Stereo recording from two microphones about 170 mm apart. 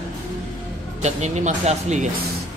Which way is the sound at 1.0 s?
45° right (ahead or behind).